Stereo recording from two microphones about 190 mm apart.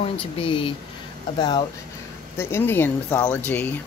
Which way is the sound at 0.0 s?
30° left (ahead or behind).